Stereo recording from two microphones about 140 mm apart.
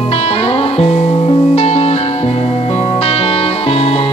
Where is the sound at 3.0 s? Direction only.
45° left (ahead or behind).